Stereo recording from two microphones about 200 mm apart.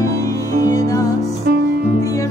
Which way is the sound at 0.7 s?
15° left (ahead or behind).